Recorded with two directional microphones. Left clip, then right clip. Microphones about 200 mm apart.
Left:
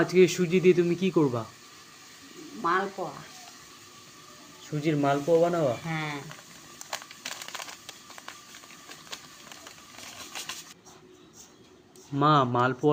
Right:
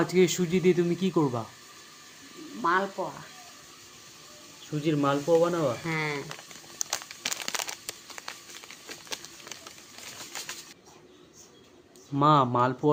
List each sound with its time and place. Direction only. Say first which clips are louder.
0.0 s speech: left 2 dB; centre (ahead or behind)
2.6 s speech: right 1 dB; 10° right (ahead or behind)
4.7 s speech: left 1 dB; centre (ahead or behind)
5.9 s speech: right 3 dB; 50° right (ahead or behind)
6.7 s crumpling: right 4 dB; 30° right (ahead or behind)
12.2 s speech: right 1 dB; 5° right (ahead or behind)